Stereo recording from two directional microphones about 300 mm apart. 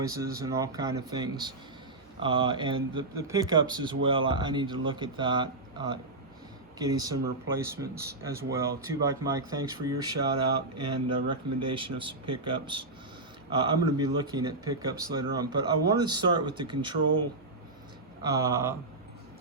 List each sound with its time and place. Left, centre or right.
0.0 s speech: centre
18.2 s speech: centre